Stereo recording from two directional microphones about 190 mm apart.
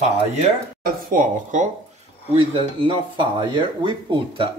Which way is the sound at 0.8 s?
45° right (ahead or behind).